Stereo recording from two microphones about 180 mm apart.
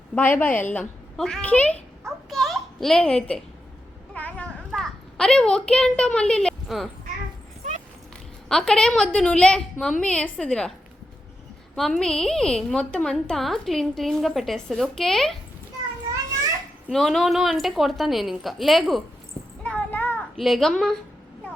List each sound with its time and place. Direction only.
0.1 s a woman's voice: 10° left (ahead or behind)
4.1 s a sound: 5° left (ahead or behind)
7.6 s a sound: 40° right (ahead or behind)
8.4 s a woman's voice: 5° left (ahead or behind)
11.7 s a woman's voice: 5° left (ahead or behind)
16.9 s a woman's voice: centre (ahead or behind)
19.6 s child singing: 10° left (ahead or behind)